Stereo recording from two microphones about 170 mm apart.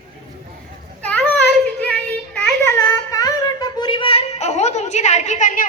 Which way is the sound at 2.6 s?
20° left (ahead or behind).